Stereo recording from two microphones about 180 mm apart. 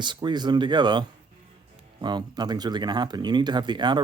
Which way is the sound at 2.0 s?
25° right (ahead or behind).